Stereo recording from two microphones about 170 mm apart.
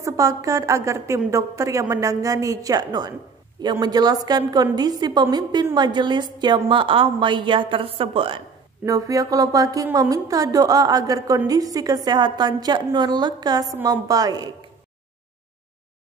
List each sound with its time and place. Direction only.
0.0 s a woman's voice: 20° right (ahead or behind)
8.8 s a woman's voice: 20° right (ahead or behind)